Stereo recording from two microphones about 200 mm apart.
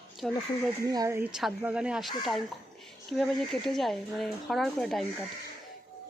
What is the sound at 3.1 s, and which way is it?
Speech, centre (ahead or behind).